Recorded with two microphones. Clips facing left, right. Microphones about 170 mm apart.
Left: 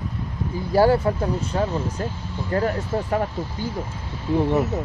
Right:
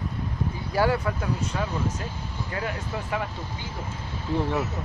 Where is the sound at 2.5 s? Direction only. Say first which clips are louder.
Left 10 dB; 45° left (ahead or behind).